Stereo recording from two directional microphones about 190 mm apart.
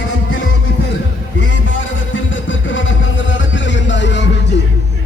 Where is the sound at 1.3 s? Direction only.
75° left (ahead or behind).